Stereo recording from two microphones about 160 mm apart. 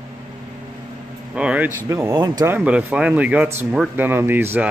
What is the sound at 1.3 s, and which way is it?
Speech, 5° right (ahead or behind).